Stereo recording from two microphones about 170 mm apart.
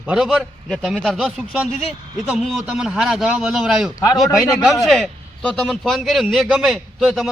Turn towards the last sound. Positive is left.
turn(degrees=0)  # may be behind; listen again after turning